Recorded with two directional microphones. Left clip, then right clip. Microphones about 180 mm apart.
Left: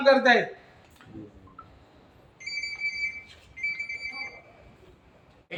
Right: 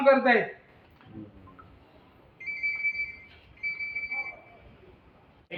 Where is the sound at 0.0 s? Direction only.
30° left (ahead or behind).